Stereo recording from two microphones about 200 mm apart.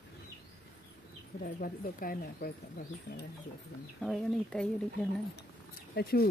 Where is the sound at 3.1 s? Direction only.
60° left (ahead or behind).